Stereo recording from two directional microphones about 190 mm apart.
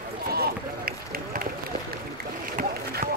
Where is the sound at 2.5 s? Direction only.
50° right (ahead or behind).